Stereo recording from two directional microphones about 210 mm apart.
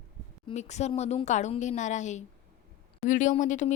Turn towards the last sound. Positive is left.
turn(degrees=35)  # may be behind; listen again after turning